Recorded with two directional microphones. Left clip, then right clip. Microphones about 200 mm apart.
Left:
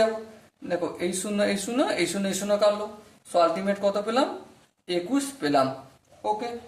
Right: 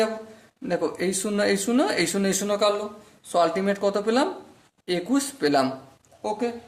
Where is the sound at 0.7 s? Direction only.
40° right (ahead or behind).